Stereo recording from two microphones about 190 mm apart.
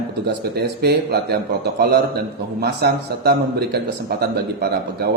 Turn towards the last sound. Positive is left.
turn(degrees=-55)  # may be behind; listen again after turning